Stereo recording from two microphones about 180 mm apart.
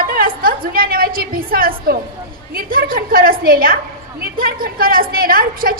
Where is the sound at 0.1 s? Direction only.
55° right (ahead or behind).